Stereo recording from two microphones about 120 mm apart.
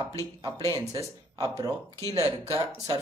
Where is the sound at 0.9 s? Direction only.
30° right (ahead or behind).